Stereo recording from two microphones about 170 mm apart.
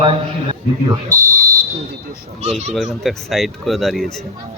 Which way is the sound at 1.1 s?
20° right (ahead or behind).